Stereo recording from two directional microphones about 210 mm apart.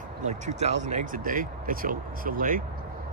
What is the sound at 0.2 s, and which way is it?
Speech, 35° right (ahead or behind).